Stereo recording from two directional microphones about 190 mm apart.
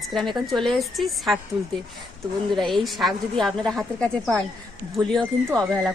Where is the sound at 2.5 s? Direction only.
Centre (ahead or behind).